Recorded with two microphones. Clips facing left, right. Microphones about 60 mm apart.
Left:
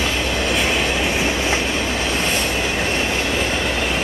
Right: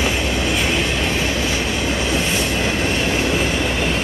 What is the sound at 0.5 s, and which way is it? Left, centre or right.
Train, centre.